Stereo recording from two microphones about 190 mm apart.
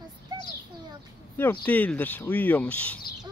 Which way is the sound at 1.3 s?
10° left (ahead or behind).